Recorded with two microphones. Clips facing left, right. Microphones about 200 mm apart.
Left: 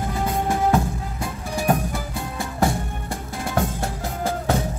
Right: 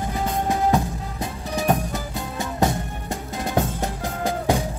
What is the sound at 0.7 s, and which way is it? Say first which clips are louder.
Music: left 1 dB; 20° right (ahead or behind).